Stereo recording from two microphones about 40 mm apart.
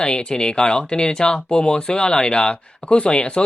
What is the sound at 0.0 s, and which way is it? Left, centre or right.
Speech, left.